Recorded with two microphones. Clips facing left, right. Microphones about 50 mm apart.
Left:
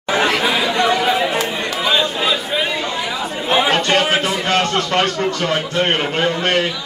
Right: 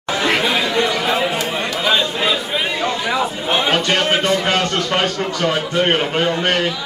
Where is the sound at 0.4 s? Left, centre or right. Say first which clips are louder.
Left 1 dB; centre.